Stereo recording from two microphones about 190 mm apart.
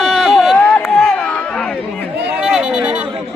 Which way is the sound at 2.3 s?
5° right (ahead or behind).